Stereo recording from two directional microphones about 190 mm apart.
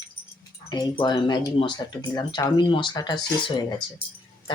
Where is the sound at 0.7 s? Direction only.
20° left (ahead or behind).